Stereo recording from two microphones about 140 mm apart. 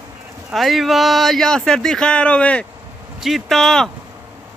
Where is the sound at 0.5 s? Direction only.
Centre (ahead or behind).